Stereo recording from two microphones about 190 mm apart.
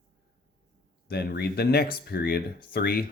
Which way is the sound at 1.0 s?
60° left (ahead or behind).